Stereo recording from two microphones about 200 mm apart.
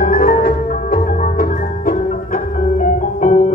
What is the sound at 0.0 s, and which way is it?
Music, 50° left (ahead or behind).